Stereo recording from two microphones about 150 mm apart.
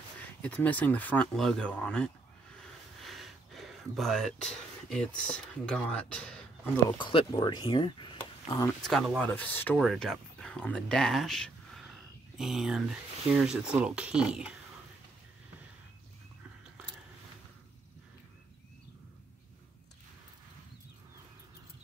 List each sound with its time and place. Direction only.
0.4 s speech: 10° left (ahead or behind)
3.0 s a sound: centre (ahead or behind)
7.0 s speech: 30° left (ahead or behind)
8.6 s speech: centre (ahead or behind)
9.2 s speech: 10° left (ahead or behind)
9.8 s speech: centre (ahead or behind)